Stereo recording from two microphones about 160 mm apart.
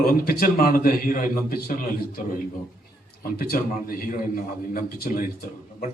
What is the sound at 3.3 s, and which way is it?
Speech, 65° left (ahead or behind).